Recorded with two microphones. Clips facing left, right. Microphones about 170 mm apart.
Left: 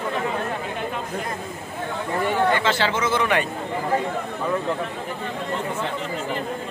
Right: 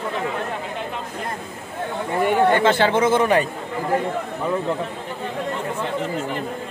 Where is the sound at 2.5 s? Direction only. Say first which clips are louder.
Right 5 dB; 50° right (ahead or behind).